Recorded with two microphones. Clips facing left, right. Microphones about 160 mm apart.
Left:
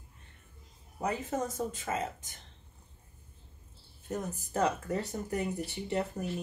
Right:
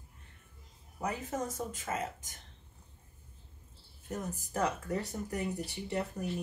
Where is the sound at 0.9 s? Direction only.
25° left (ahead or behind).